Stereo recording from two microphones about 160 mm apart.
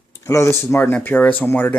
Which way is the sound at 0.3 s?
15° left (ahead or behind).